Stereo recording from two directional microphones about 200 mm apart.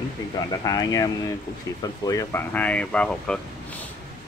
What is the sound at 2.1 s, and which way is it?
Speech, 15° left (ahead or behind).